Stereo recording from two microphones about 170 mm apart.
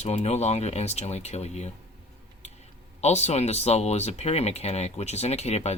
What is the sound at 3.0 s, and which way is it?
Speech, 40° left (ahead or behind).